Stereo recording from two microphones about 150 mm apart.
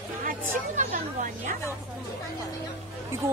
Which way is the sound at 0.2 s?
60° right (ahead or behind).